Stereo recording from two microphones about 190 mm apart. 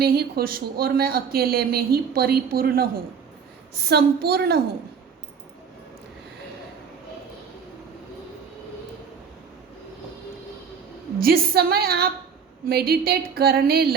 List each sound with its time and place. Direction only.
0.0 s a woman's voice: 55° right (ahead or behind)
11.2 s speech: 50° right (ahead or behind)